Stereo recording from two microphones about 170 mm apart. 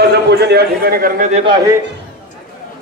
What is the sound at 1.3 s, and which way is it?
Speech, 30° right (ahead or behind).